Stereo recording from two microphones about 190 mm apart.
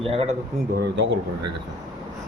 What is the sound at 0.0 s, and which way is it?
Speech, 30° right (ahead or behind).